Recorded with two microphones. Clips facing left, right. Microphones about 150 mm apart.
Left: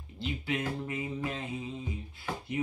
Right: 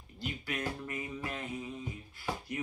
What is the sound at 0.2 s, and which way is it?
Music, 25° left (ahead or behind).